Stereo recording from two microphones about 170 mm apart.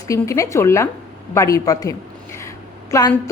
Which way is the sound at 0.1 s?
20° left (ahead or behind).